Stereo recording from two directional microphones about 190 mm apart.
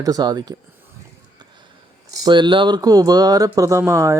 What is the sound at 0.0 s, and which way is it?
Speech, 20° right (ahead or behind).